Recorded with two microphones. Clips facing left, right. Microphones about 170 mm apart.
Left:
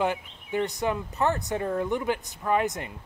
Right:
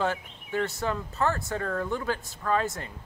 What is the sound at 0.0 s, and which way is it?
Speech, 15° left (ahead or behind).